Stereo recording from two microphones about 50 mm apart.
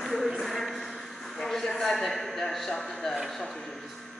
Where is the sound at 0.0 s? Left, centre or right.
Centre.